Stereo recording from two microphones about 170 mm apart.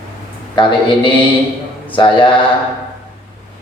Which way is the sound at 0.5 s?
30° left (ahead or behind).